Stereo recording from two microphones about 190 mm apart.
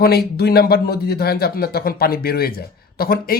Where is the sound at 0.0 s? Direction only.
55° left (ahead or behind).